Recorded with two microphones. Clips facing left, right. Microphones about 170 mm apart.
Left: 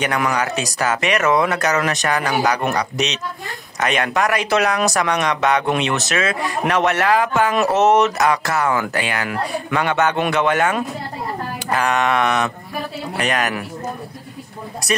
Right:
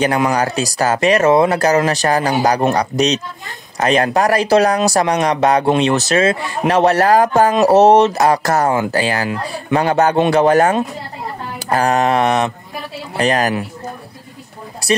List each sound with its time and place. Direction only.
0.0 s speech: 30° right (ahead or behind)
8.7 s speech: 30° right (ahead or behind)
14.8 s speech: 30° right (ahead or behind)